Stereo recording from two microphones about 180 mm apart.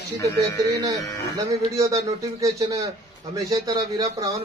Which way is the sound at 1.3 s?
20° right (ahead or behind).